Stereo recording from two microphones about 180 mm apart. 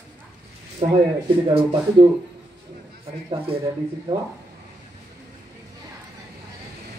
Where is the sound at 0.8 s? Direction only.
40° right (ahead or behind).